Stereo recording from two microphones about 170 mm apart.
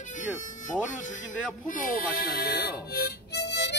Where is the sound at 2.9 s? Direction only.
75° left (ahead or behind).